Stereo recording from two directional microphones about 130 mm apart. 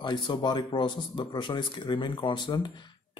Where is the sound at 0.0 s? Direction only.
35° left (ahead or behind).